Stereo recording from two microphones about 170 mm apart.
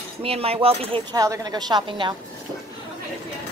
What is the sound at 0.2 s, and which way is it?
A woman's voice, 35° right (ahead or behind).